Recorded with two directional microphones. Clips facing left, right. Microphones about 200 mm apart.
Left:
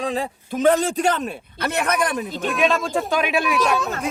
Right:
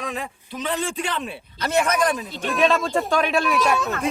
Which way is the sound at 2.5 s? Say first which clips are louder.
Right 1 dB; centre (ahead or behind).